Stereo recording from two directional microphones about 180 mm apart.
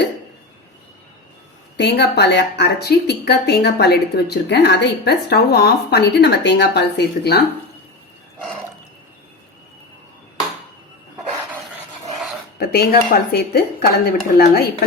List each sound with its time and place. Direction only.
1.7 s a woman's voice: 70° left (ahead or behind)
12.5 s a woman's voice: 60° left (ahead or behind)